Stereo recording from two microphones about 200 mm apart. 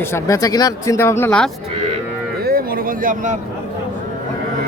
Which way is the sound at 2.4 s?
50° right (ahead or behind).